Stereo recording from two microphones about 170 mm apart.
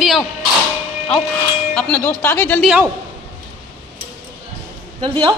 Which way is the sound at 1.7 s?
10° left (ahead or behind).